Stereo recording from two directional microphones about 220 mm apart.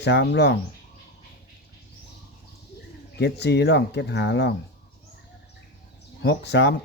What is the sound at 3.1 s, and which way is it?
Speech, 50° left (ahead or behind).